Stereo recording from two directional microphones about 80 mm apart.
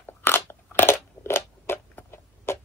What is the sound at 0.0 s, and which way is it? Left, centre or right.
Crunch, left.